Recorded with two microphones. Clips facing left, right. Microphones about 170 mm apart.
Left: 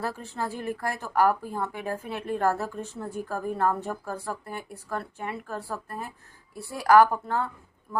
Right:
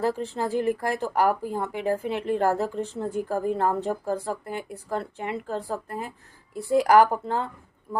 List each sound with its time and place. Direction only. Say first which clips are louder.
0.0 s speech: right 6 dB; 15° right (ahead or behind)